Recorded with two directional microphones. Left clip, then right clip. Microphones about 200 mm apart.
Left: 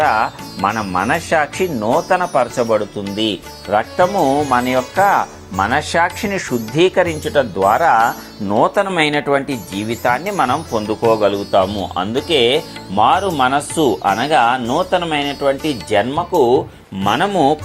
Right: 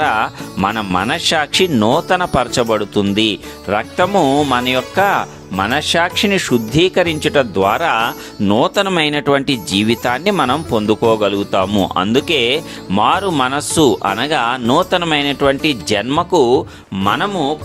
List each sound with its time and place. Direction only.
0.1 s speech: 50° right (ahead or behind)
7.3 s speech: 35° right (ahead or behind)
8.7 s speech: 55° right (ahead or behind)
11.2 s speech: 40° right (ahead or behind)
17.1 s speech: centre (ahead or behind)